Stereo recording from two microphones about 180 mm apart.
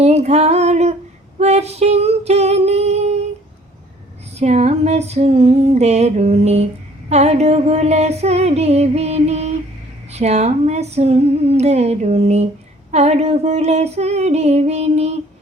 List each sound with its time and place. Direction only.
0.0 s a sound: 40° right (ahead or behind)
1.4 s female singing: 35° right (ahead or behind)
4.4 s music: 35° right (ahead or behind)